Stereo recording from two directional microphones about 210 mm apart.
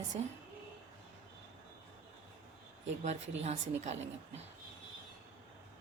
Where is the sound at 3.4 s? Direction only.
30° right (ahead or behind).